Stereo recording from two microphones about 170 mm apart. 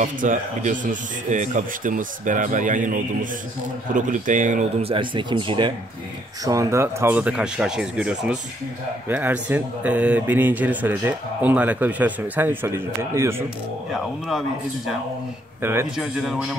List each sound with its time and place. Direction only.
0.0 s speech: 50° right (ahead or behind)
4.8 s speech: 30° right (ahead or behind); by 13.4 s 15° right (ahead or behind)
15.6 s speech: 15° right (ahead or behind)
16.0 s a man's voice: centre (ahead or behind)